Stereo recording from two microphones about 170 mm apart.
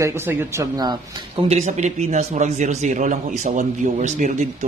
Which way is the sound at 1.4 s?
40° right (ahead or behind).